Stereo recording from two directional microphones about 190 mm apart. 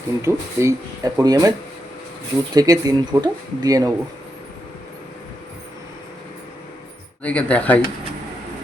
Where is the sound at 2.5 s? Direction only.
20° right (ahead or behind).